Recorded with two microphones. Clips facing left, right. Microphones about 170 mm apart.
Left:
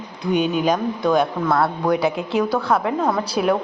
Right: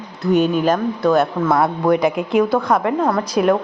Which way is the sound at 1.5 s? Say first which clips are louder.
Right 3 dB; 20° right (ahead or behind).